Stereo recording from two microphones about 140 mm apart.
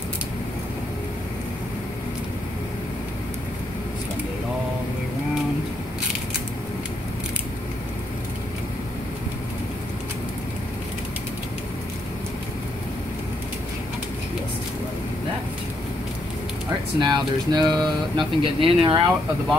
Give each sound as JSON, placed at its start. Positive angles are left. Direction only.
{"t": 17.0, "sound": "speech", "side_deg": -30}